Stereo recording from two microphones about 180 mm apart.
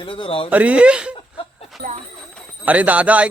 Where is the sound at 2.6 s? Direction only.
10° right (ahead or behind).